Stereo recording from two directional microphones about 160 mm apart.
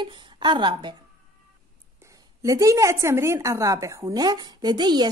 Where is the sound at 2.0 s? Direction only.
20° right (ahead or behind).